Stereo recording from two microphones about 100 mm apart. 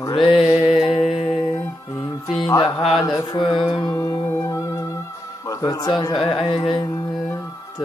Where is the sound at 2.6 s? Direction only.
55° left (ahead or behind).